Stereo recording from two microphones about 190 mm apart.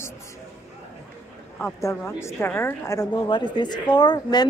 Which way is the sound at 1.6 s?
10° left (ahead or behind).